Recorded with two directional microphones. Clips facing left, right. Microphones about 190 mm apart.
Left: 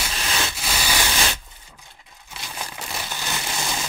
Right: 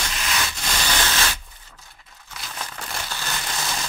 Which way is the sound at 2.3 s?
15° left (ahead or behind).